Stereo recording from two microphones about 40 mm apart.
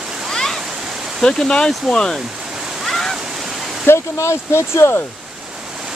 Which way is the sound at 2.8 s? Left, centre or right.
Centre.